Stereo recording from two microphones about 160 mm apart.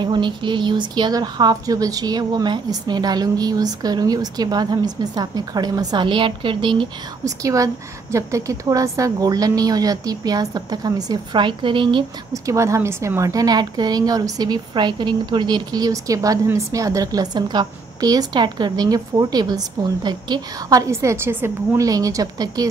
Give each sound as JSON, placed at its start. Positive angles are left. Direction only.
{"t": 0.0, "sound": "a woman's voice", "side_deg": -30}
{"t": 12.4, "sound": "a woman's voice", "side_deg": -20}